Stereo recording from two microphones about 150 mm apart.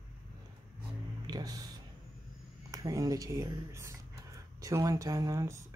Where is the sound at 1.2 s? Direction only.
25° right (ahead or behind).